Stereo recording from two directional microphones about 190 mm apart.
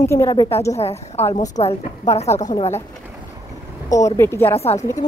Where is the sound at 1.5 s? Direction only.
35° left (ahead or behind).